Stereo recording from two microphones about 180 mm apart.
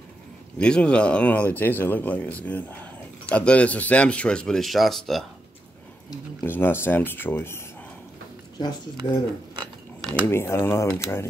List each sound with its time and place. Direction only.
0.6 s speech: 5° left (ahead or behind)
6.0 s speech: 10° left (ahead or behind)
8.5 s speech: 25° left (ahead or behind)
10.2 s speech: 15° left (ahead or behind)